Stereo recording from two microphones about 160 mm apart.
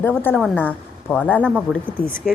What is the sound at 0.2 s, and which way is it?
A woman's voice, 10° left (ahead or behind).